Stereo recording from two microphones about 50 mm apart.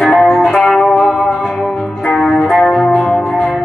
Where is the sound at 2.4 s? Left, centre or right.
Centre.